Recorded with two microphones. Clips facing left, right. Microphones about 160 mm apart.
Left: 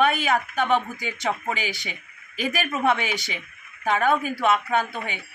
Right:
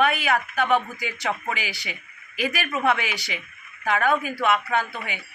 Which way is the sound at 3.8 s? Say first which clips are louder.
Left 1 dB; 25° left (ahead or behind).